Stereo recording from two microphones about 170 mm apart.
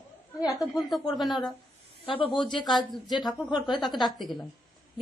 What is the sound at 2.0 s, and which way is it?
Speech, 30° left (ahead or behind).